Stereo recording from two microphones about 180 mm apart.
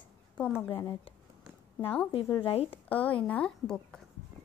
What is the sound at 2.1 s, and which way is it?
Speech, 30° left (ahead or behind).